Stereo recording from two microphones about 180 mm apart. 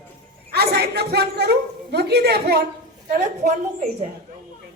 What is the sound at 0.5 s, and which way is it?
A woman's voice, 60° right (ahead or behind).